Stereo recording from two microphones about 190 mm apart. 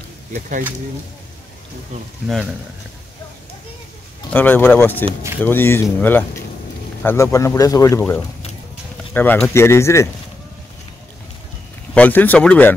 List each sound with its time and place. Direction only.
0.3 s speech: 45° right (ahead or behind)
2.2 s speech: centre (ahead or behind)
4.3 s speech: 10° left (ahead or behind)
11.9 s speech: 10° left (ahead or behind)